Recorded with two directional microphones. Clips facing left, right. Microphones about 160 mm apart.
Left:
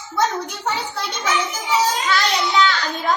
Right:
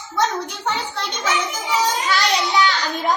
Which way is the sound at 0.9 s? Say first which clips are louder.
Even; 10° left (ahead or behind).